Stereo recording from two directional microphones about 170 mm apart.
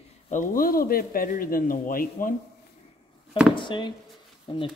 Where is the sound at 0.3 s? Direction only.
50° left (ahead or behind).